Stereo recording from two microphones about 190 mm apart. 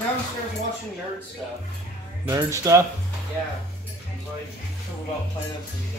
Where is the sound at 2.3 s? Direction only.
20° right (ahead or behind).